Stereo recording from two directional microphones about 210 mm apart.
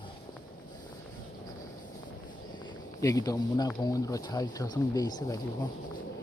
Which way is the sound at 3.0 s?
15° left (ahead or behind).